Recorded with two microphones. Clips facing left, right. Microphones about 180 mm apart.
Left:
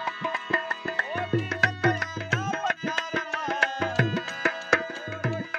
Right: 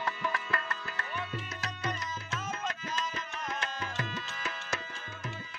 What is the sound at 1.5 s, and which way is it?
Music, 70° left (ahead or behind).